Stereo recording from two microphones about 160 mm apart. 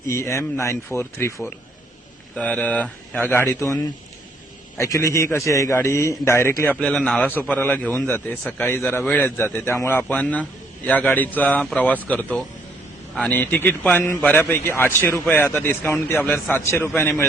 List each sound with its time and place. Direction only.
0.1 s speech: 15° left (ahead or behind)
4.8 s speech: 20° left (ahead or behind)